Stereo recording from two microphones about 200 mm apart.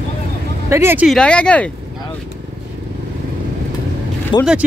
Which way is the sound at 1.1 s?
5° left (ahead or behind).